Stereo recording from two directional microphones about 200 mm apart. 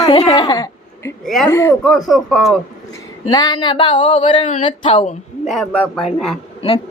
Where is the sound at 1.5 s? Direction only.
15° left (ahead or behind).